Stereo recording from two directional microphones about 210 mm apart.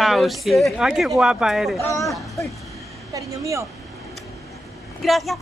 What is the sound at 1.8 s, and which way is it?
Speech, 15° left (ahead or behind).